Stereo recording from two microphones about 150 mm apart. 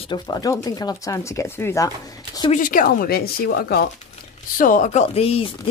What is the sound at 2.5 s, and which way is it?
A woman's voice, 65° left (ahead or behind).